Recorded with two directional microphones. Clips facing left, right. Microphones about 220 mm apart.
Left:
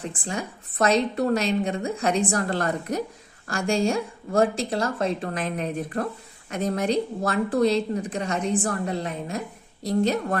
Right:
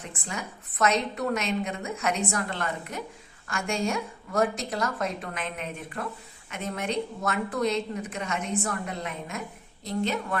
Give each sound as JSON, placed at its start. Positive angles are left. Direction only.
{"t": 0.0, "sound": "a woman's voice", "side_deg": 30}